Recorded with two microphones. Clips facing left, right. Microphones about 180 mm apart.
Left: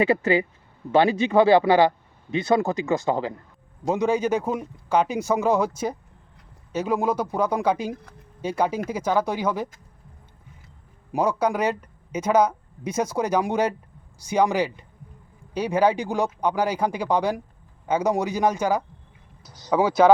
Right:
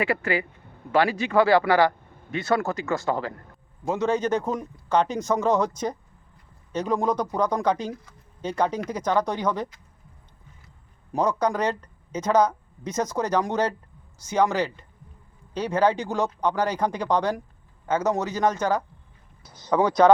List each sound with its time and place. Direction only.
0.0 s speech: 20° left (ahead or behind)
11.1 s speech: 10° left (ahead or behind)